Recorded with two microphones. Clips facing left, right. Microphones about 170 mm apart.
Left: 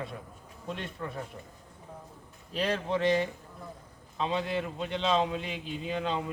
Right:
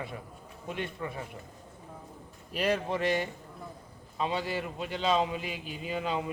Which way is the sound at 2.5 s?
5° right (ahead or behind).